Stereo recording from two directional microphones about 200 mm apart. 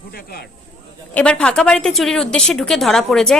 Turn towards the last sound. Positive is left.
turn(degrees=0)  # may be behind; listen again after turning